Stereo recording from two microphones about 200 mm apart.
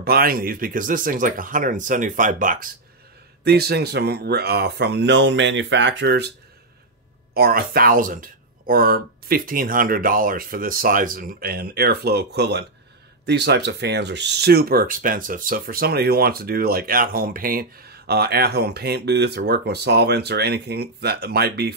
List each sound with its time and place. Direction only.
0.0 s speech: 50° right (ahead or behind)
7.3 s speech: 45° right (ahead or behind)